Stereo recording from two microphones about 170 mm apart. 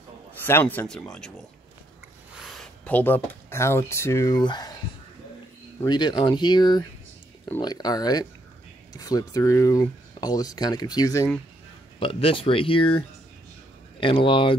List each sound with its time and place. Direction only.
0.3 s speech: 10° left (ahead or behind)
2.3 s speech: centre (ahead or behind); by 4.7 s 25° left (ahead or behind)
5.8 s speech: 25° left (ahead or behind)
12.0 s speech: 35° left (ahead or behind)